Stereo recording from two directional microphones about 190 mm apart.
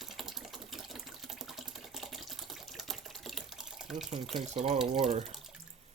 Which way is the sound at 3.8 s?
Centre (ahead or behind).